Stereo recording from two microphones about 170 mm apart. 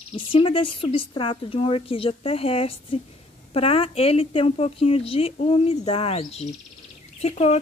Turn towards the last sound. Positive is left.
turn(degrees=40)  # may be behind; listen again after turning